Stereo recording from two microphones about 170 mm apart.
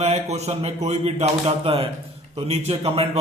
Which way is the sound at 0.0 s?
40° right (ahead or behind).